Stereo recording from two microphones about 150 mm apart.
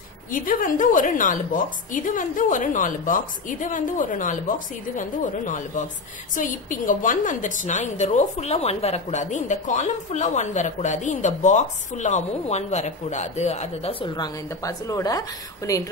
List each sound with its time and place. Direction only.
0.3 s a woman's voice: 65° left (ahead or behind); by 15.9 s 20° left (ahead or behind)